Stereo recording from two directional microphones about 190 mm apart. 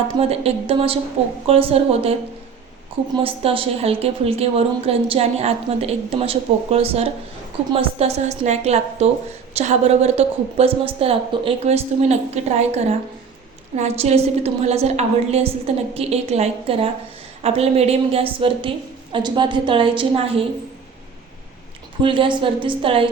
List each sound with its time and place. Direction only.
0.2 s a woman's voice: 30° right (ahead or behind)
3.4 s a woman's voice: 30° right (ahead or behind)
22.0 s a woman's voice: 25° right (ahead or behind)